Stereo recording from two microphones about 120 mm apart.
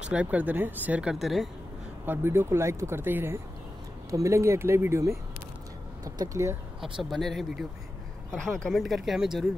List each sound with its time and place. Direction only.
0.0 s speech: 10° right (ahead or behind)
1.2 s speech: centre (ahead or behind)
2.0 s speech: 20° right (ahead or behind)
6.8 s speech: centre (ahead or behind)